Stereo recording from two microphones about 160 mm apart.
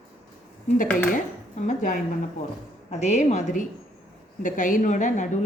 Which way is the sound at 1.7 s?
50° left (ahead or behind).